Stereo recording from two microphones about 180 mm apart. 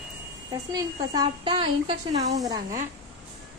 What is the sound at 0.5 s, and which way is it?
A woman's voice, 20° right (ahead or behind).